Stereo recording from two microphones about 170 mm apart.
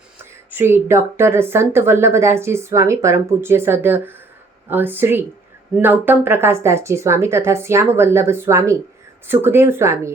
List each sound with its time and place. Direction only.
0.5 s speech: 15° right (ahead or behind)